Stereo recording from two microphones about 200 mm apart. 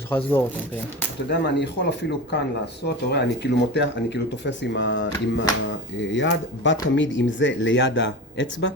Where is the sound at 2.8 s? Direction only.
55° left (ahead or behind).